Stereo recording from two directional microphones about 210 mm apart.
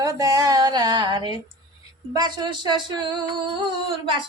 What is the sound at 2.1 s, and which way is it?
Speech, 20° right (ahead or behind).